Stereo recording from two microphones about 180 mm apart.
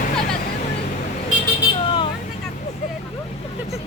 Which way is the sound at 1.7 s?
30° left (ahead or behind).